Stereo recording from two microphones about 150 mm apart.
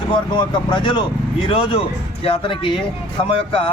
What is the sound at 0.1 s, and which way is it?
Speech, 30° left (ahead or behind).